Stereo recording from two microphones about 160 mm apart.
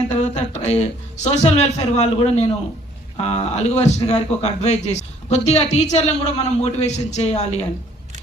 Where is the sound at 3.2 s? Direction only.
45° left (ahead or behind).